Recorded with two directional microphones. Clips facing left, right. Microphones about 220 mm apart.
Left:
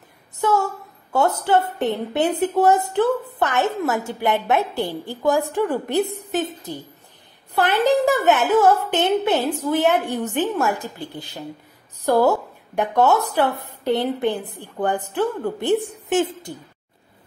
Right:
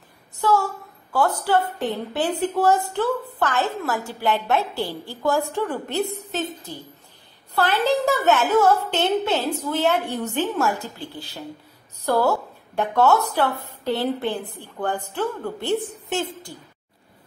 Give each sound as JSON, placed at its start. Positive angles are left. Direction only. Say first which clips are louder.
{"t": 0.4, "sound": "a woman's voice", "louder": "left 1 dB", "side_deg": 20}